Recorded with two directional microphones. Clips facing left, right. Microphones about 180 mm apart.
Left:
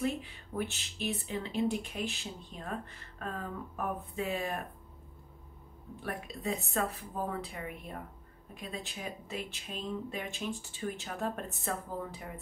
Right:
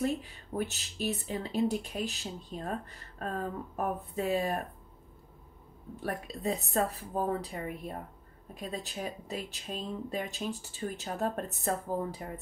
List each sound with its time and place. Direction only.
0.0 s speech: 40° right (ahead or behind)
6.0 s speech: 35° right (ahead or behind)